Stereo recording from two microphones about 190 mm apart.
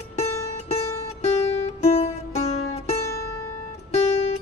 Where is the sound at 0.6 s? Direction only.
35° left (ahead or behind).